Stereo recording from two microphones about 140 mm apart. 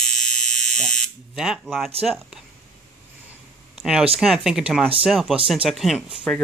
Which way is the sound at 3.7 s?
5° right (ahead or behind).